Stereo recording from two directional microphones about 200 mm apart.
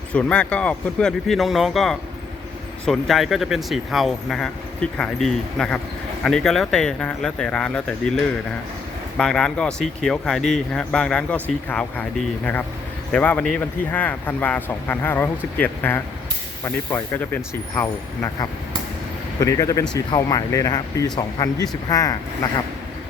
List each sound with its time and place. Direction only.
0.1 s speech: 5° left (ahead or behind)
13.1 s speech: 5° left (ahead or behind)